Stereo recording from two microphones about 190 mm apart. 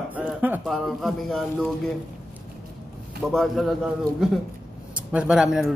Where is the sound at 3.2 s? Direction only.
Centre (ahead or behind).